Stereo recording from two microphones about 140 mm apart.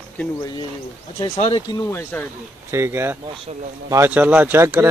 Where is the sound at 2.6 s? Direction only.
20° right (ahead or behind).